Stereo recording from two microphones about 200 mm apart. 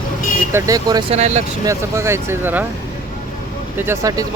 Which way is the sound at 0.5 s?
15° right (ahead or behind).